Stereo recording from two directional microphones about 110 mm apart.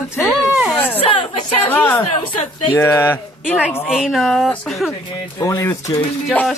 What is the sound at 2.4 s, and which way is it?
Speech, 60° left (ahead or behind).